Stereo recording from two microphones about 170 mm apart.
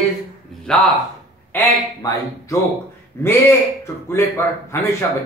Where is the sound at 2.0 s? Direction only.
20° left (ahead or behind).